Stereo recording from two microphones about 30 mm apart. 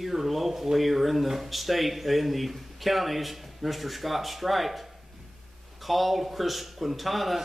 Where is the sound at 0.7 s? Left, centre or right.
Centre.